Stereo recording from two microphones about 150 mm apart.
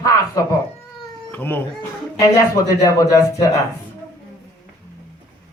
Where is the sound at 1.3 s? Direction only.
15° left (ahead or behind).